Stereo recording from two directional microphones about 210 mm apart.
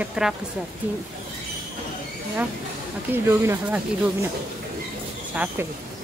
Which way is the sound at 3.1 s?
10° right (ahead or behind).